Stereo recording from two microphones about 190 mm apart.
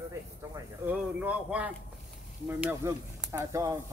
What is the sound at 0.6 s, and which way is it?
Speech, 10° right (ahead or behind).